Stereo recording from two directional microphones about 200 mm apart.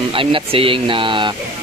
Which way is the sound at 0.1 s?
25° right (ahead or behind).